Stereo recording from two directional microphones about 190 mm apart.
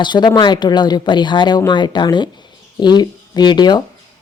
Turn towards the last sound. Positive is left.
turn(degrees=20)  # may be behind; listen again after turning